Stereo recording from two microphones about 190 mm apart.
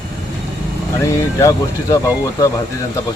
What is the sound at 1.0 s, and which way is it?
Speech, 15° left (ahead or behind).